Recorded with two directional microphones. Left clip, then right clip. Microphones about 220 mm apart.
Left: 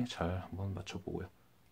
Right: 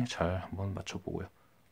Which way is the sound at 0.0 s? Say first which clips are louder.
Right 5 dB; 25° right (ahead or behind).